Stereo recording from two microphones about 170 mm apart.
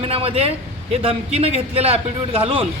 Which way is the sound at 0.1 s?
35° right (ahead or behind).